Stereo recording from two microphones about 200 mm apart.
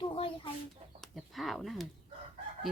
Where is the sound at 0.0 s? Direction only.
25° left (ahead or behind).